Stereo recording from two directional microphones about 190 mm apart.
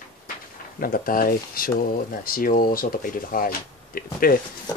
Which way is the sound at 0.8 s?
50° left (ahead or behind).